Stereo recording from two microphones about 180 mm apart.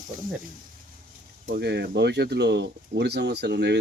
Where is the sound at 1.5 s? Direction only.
65° right (ahead or behind).